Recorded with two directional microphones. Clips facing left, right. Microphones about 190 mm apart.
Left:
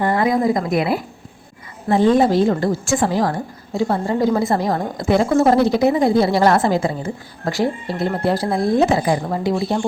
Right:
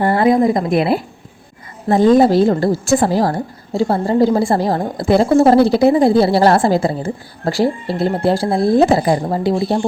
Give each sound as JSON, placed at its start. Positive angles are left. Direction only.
{"t": 0.0, "sound": "a woman's voice", "side_deg": -30}
{"t": 1.9, "sound": "a woman's voice", "side_deg": -40}